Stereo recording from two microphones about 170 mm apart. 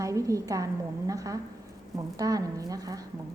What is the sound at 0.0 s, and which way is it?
A woman's voice, 20° right (ahead or behind).